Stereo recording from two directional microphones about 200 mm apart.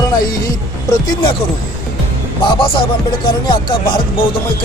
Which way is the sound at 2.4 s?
25° left (ahead or behind).